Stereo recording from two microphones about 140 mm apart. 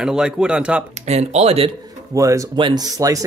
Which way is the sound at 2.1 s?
25° right (ahead or behind).